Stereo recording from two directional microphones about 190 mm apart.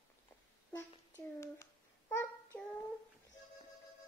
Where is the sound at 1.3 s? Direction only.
15° left (ahead or behind).